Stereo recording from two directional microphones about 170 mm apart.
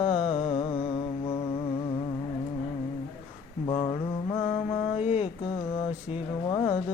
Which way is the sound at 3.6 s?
25° left (ahead or behind).